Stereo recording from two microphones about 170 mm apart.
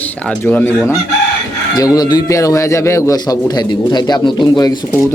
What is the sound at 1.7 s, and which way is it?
A man's voice, 20° left (ahead or behind).